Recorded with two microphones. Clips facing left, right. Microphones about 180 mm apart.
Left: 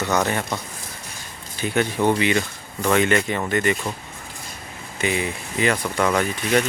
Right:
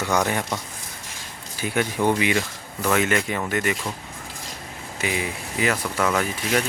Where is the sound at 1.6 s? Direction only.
10° right (ahead or behind).